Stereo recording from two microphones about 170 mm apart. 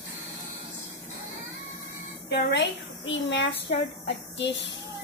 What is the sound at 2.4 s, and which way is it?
A woman's voice, 80° left.